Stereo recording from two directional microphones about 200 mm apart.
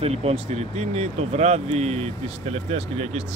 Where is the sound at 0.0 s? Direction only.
30° right (ahead or behind).